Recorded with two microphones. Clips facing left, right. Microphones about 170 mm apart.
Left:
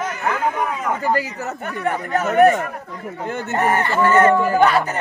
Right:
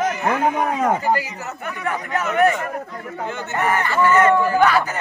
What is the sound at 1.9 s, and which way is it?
Speech, 35° left (ahead or behind).